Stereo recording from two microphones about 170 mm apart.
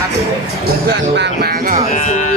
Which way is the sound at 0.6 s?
80° right.